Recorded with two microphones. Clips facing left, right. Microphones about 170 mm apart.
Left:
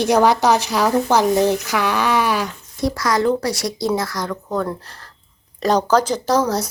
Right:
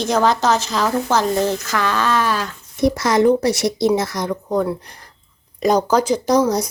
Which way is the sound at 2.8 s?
20° right (ahead or behind).